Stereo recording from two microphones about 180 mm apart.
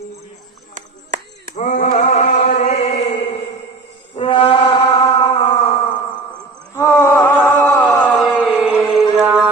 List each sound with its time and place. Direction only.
0.7 s clapping: 45° right (ahead or behind)
1.5 s mantra: 45° left (ahead or behind)
4.1 s music: 30° left (ahead or behind)
6.7 s a sound: 15° left (ahead or behind)
7.2 s music: 10° left (ahead or behind)